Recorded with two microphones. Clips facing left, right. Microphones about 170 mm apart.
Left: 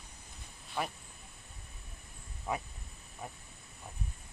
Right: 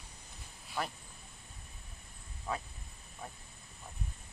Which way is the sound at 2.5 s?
15° left (ahead or behind).